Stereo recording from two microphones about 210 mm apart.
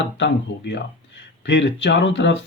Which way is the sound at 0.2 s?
55° left (ahead or behind).